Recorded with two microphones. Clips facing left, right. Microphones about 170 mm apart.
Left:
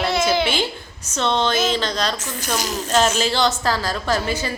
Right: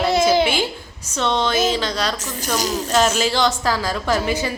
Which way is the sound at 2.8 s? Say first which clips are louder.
Left 1 dB; 10° right (ahead or behind).